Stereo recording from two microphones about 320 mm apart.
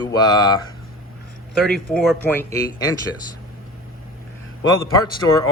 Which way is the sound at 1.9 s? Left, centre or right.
Centre.